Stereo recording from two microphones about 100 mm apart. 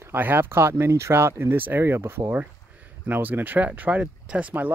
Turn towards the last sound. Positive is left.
turn(degrees=-15)  # may be behind; listen again after turning